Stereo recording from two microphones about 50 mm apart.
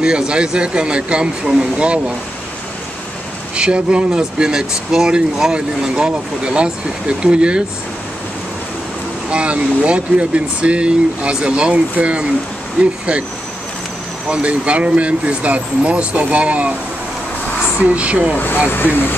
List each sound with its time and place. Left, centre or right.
0.0 s speech: centre
3.5 s speech: right
9.3 s speech: right
14.3 s speech: right
17.7 s speech: right
18.7 s speech: left